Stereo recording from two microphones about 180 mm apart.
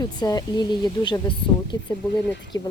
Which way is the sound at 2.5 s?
20° left (ahead or behind).